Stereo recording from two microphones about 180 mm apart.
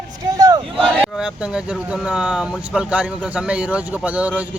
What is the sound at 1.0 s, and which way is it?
Speech, 5° right (ahead or behind).